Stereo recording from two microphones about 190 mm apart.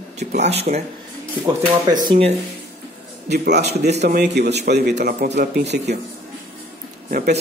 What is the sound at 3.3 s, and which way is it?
A man's voice, 60° right (ahead or behind).